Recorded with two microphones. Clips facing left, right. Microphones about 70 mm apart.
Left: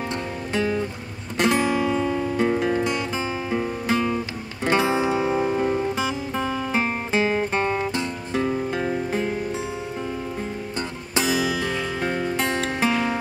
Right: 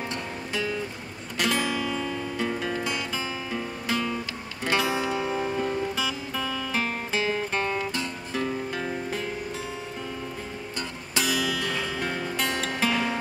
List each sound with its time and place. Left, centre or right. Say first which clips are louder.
0.6 s music: left 6 dB; left
1.4 s guitar: left 6 dB; left
3.5 s music: left 6 dB; left
11.1 s music: left 4 dB; left